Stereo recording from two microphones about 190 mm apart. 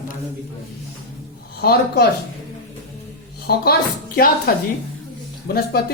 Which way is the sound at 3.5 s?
60° left (ahead or behind).